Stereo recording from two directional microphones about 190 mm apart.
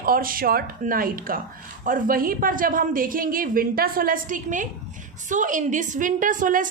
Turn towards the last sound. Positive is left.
turn(degrees=-45)  # may be behind; listen again after turning